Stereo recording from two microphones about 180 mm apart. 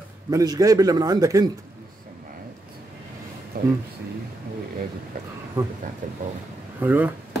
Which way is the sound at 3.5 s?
55° right (ahead or behind).